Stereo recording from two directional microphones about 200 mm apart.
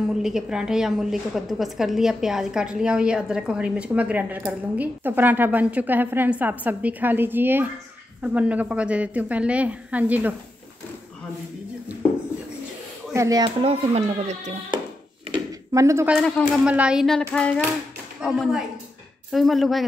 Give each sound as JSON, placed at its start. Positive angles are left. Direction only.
{"t": 0.2, "sound": "a woman's voice", "side_deg": -5}
{"t": 13.1, "sound": "speech", "side_deg": -15}
{"t": 15.7, "sound": "a woman's voice", "side_deg": -15}
{"t": 16.2, "sound": "a woman's voice", "side_deg": 5}
{"t": 16.6, "sound": "a woman's voice", "side_deg": -5}